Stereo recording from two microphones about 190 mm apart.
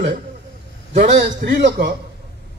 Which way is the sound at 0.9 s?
40° right (ahead or behind).